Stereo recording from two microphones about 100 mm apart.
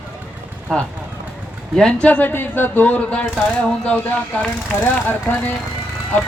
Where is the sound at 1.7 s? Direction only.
10° left (ahead or behind).